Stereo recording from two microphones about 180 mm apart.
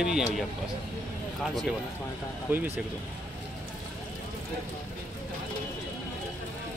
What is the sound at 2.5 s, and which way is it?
Speech, 10° right (ahead or behind).